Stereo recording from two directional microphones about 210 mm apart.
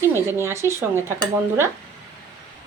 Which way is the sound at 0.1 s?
10° right (ahead or behind).